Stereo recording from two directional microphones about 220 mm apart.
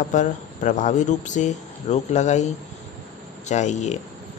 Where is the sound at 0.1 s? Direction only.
35° left (ahead or behind).